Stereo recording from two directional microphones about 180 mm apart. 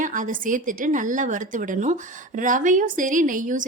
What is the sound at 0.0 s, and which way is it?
A woman's voice, 45° right (ahead or behind).